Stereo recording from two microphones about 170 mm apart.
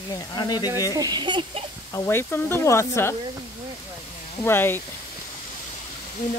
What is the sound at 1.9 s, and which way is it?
Speech, 15° left (ahead or behind).